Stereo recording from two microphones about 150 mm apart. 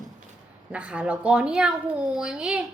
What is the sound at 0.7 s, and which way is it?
A woman's voice, 10° right (ahead or behind).